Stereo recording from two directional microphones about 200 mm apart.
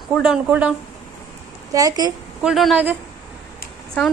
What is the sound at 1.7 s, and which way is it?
Speech, 20° right (ahead or behind).